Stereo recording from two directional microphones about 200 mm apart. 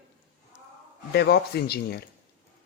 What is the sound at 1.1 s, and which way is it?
Speech, 55° left (ahead or behind).